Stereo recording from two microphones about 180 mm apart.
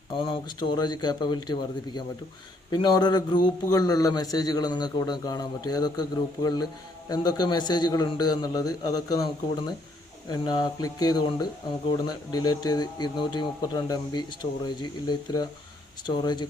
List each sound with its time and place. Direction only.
0.2 s a man's voice: 25° left (ahead or behind)